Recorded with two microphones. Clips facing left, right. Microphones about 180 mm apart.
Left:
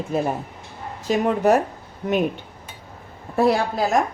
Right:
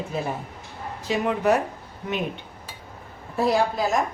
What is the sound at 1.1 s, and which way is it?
Speech, 45° left (ahead or behind).